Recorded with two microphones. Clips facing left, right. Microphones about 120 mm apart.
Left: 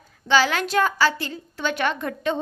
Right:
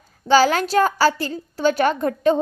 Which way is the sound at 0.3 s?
40° right (ahead or behind).